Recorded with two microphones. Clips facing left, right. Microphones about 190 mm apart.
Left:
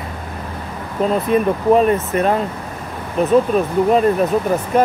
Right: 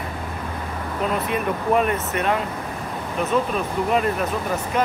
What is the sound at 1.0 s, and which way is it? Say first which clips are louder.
Speech: left 8 dB; 35° left (ahead or behind).